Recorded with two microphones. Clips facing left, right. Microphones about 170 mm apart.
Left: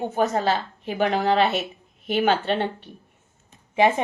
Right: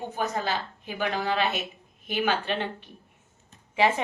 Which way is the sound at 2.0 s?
50° left (ahead or behind).